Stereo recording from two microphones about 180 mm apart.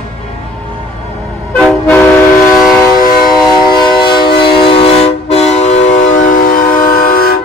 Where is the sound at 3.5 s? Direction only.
25° left (ahead or behind); by 7.4 s 55° left (ahead or behind).